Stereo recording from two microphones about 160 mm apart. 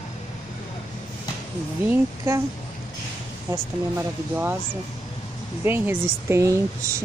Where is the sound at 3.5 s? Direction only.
15° right (ahead or behind).